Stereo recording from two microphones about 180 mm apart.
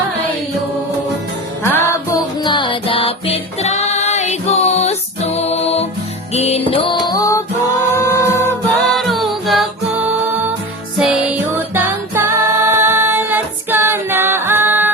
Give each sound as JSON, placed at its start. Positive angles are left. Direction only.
{"t": 1.7, "sound": "music", "side_deg": 15}
{"t": 2.4, "sound": "music", "side_deg": 25}
{"t": 8.8, "sound": "music", "side_deg": 0}